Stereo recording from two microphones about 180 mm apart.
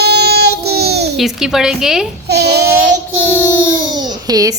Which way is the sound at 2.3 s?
65° right (ahead or behind).